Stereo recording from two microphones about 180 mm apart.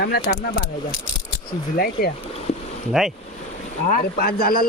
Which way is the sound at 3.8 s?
55° left (ahead or behind).